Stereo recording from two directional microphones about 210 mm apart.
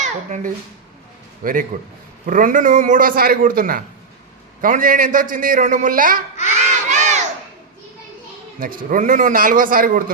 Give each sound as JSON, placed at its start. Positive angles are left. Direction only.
{"t": 0.0, "sound": "a child's voice", "side_deg": -35}
{"t": 6.5, "sound": "crowd", "side_deg": -35}
{"t": 8.5, "sound": "a man's voice", "side_deg": -40}